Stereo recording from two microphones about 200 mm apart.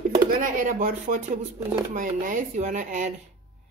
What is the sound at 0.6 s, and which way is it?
A woman's voice, 40° right (ahead or behind).